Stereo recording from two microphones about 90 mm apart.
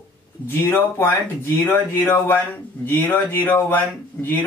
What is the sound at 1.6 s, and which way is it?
Speech, 25° left (ahead or behind).